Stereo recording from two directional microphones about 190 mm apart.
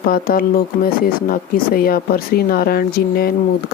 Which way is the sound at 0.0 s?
50° left (ahead or behind).